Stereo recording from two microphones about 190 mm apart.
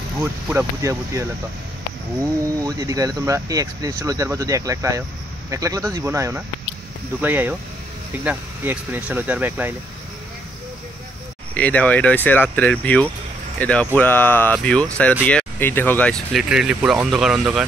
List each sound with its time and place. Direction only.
0.2 s speech: 10° right (ahead or behind)
2.6 s speech: 20° right (ahead or behind)
11.5 s speech: 5° left (ahead or behind)